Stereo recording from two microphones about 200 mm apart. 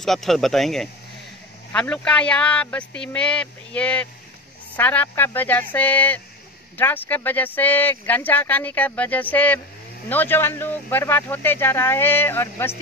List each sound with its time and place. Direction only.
0.0 s a man's voice: centre (ahead or behind)